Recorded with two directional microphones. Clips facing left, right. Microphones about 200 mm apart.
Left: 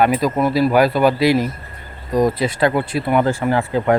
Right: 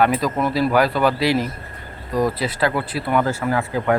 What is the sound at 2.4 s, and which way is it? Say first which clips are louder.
Speech: left 4 dB; 25° left (ahead or behind).